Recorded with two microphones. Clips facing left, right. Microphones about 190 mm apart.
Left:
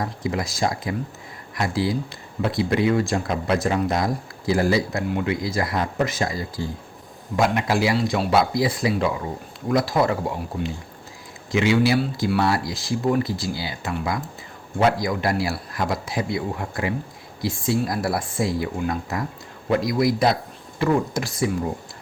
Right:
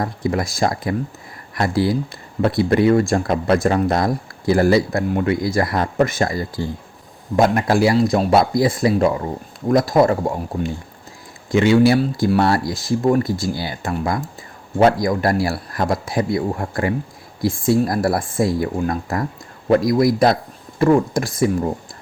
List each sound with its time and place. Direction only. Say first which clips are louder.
0.0 s speech: right 5 dB; 55° right (ahead or behind)